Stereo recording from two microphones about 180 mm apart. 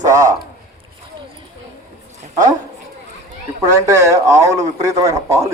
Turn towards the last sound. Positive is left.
turn(degrees=-15)  # may be behind; listen again after turning